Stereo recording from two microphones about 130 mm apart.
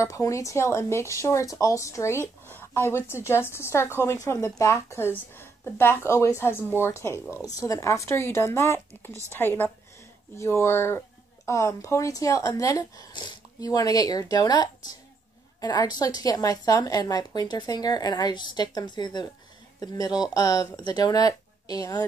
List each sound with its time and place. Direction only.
0.0 s a woman's voice: 25° left (ahead or behind)
20.3 s speech: 25° left (ahead or behind)